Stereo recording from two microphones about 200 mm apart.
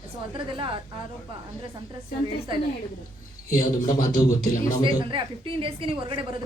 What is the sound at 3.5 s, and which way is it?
Speech, 40° left (ahead or behind).